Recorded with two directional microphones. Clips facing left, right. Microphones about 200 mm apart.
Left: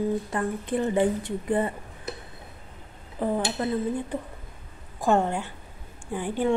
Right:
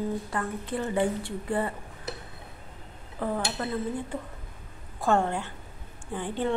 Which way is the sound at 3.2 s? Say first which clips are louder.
Left 4 dB; 20° left (ahead or behind).